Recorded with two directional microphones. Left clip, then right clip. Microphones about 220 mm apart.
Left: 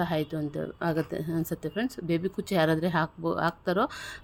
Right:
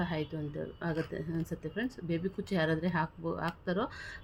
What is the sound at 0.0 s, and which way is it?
Speech, 50° left (ahead or behind).